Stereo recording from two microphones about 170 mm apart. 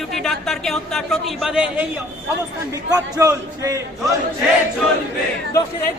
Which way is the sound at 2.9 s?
20° right (ahead or behind).